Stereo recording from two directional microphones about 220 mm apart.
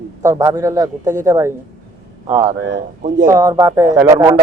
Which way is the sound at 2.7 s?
35° right (ahead or behind).